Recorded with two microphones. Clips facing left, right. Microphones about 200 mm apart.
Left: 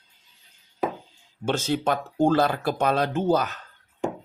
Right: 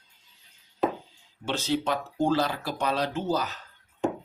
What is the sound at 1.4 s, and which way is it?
Speech, 50° left (ahead or behind).